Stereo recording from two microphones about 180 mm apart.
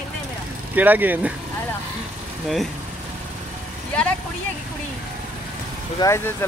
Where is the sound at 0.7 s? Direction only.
10° right (ahead or behind).